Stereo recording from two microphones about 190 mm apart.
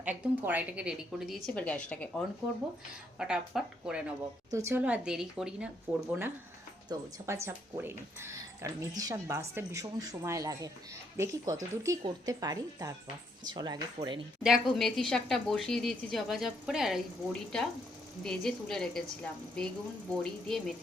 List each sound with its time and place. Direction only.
0.0 s speech: 10° right (ahead or behind)
14.4 s speech: centre (ahead or behind)